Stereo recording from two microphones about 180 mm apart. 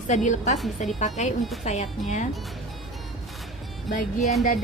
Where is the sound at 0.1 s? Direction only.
40° left (ahead or behind).